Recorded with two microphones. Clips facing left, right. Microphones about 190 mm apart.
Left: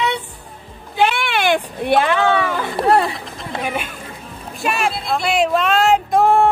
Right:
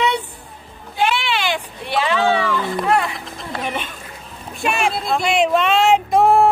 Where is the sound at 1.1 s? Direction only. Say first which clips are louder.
Left 4 dB; 55° left (ahead or behind).